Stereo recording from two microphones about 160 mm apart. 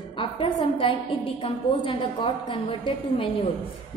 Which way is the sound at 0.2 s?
35° left (ahead or behind).